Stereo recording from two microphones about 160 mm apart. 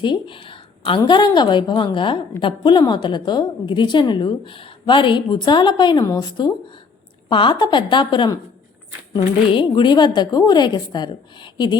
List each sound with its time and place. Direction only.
0.0 s a woman's voice: 30° left (ahead or behind)